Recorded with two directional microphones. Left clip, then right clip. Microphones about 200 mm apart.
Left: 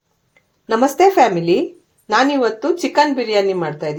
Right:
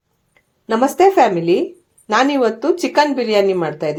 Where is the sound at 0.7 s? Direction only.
Centre (ahead or behind).